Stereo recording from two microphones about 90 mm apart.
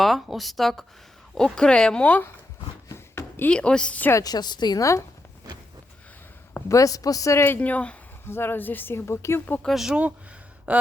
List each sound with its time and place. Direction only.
0.0 s a woman's voice: centre (ahead or behind)
2.9 s a sound: 25° left (ahead or behind)
3.5 s speech: 10° left (ahead or behind)
4.1 s a woman's voice: 45° left (ahead or behind)
4.8 s speech: 35° left (ahead or behind)
6.7 s speech: 40° left (ahead or behind); by 7.9 s 15° left (ahead or behind)
8.3 s speech: 25° left (ahead or behind)
9.6 s a woman's voice: 5° right (ahead or behind)
10.7 s a sound: 15° right (ahead or behind)